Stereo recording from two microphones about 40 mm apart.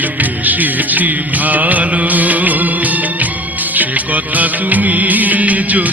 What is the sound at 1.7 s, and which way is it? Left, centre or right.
Music, right.